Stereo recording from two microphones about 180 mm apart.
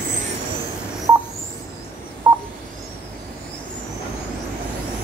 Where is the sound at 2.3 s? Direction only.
15° right (ahead or behind).